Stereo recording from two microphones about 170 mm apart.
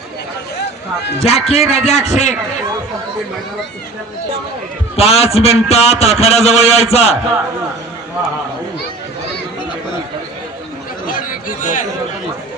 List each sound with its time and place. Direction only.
1.2 s a man's voice: 40° left (ahead or behind)
4.9 s a man's voice: 35° left (ahead or behind)
11.0 s chatter: 55° left (ahead or behind)